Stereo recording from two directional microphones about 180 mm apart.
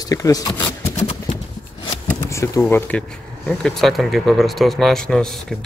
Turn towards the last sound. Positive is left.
turn(degrees=0)  # may be behind; listen again after turning